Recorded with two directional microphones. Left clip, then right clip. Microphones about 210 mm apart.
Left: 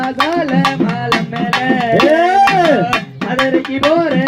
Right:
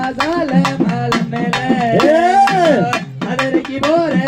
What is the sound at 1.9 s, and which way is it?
Music, 40° left (ahead or behind).